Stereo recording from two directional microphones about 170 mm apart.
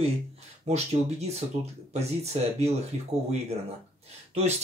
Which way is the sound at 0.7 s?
40° right (ahead or behind).